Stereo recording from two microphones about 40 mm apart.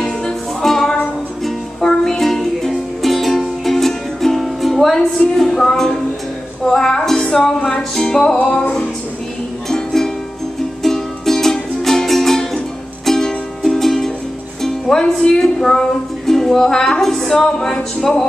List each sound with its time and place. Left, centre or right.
0.0 s music: centre
4.9 s music: centre
6.6 s speech: centre
7.9 s music: centre
9.7 s music: centre